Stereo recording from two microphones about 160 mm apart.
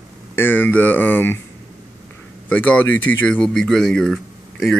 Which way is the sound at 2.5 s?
10° left (ahead or behind).